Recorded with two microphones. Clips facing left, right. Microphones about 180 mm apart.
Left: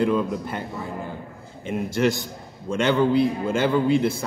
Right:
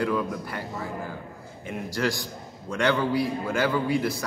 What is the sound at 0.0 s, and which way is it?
A man's voice, 20° left (ahead or behind).